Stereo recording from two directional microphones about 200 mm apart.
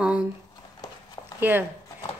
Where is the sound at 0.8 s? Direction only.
20° left (ahead or behind).